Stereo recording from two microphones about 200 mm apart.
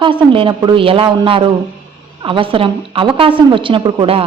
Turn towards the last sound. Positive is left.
turn(degrees=-25)  # may be behind; listen again after turning